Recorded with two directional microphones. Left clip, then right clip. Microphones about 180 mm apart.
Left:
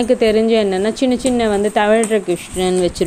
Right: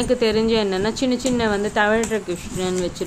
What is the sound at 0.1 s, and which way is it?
A woman's voice, 25° left (ahead or behind).